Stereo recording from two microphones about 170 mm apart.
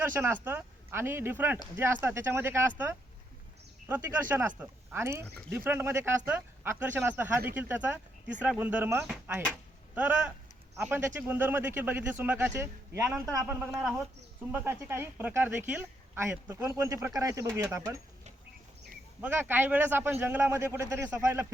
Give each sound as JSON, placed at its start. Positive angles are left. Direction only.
{"t": 0.0, "sound": "speech", "side_deg": -15}
{"t": 13.6, "sound": "speech", "side_deg": -5}
{"t": 14.5, "sound": "speech", "side_deg": -15}
{"t": 19.2, "sound": "speech", "side_deg": -10}